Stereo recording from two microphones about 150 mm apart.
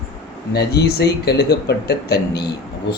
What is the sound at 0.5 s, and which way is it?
Speech, 90° left.